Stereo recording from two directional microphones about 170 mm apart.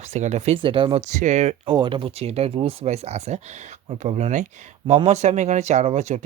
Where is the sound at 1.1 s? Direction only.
45° right (ahead or behind).